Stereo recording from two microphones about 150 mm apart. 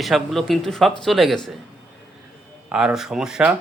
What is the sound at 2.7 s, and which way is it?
Speech, 5° right (ahead or behind).